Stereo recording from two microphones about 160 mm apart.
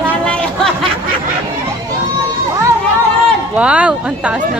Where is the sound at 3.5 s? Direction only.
10° right (ahead or behind).